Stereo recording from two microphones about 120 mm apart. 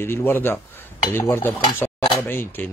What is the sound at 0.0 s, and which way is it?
Speech, 20° left (ahead or behind).